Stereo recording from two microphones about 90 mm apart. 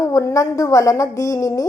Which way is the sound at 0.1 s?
35° left (ahead or behind).